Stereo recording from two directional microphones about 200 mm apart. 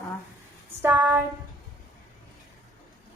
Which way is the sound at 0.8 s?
10° right (ahead or behind).